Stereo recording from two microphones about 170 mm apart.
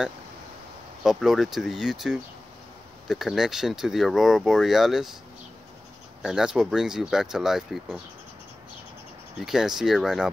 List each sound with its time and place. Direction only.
1.0 s speech: centre (ahead or behind)
6.2 s speech: 5° right (ahead or behind)
9.5 s speech: 5° right (ahead or behind)